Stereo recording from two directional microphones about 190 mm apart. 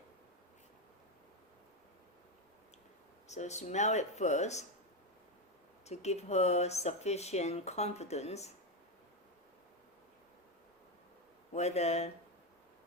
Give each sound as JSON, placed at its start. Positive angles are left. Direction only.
{"t": 3.2, "sound": "speech", "side_deg": 35}
{"t": 5.8, "sound": "speech", "side_deg": 35}
{"t": 11.5, "sound": "speech", "side_deg": 35}